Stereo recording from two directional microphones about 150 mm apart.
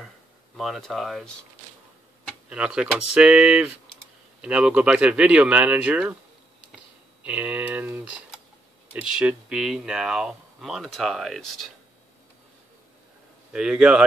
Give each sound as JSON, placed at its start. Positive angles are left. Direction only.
{"t": 0.6, "sound": "speech", "side_deg": 0}
{"t": 2.5, "sound": "speech", "side_deg": -5}
{"t": 7.2, "sound": "speech", "side_deg": -10}
{"t": 13.5, "sound": "speech", "side_deg": -5}